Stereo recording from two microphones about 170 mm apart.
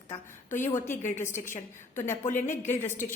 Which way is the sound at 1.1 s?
15° left (ahead or behind).